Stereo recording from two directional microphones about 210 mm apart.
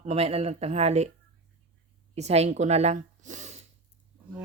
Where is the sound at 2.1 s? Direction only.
30° right (ahead or behind).